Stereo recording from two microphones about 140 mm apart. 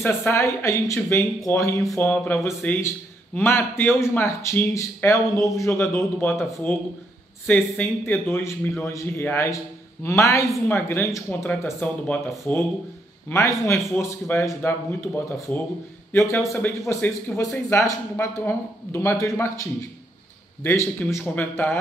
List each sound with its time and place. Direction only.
0.0 s a man's voice: 15° left (ahead or behind)
11.8 s a man's voice: 10° left (ahead or behind)